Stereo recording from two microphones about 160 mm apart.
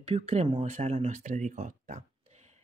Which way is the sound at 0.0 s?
40° right (ahead or behind).